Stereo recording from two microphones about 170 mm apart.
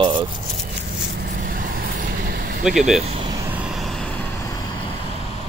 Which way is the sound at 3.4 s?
10° right (ahead or behind).